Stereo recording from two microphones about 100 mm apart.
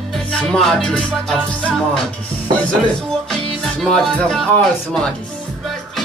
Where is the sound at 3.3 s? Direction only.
5° left (ahead or behind).